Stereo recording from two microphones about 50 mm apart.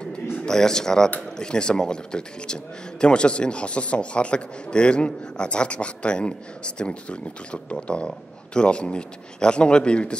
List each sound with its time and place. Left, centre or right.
0.5 s speech: centre